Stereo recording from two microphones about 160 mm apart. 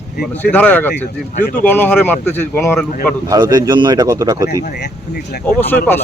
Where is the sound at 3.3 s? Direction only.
25° right (ahead or behind).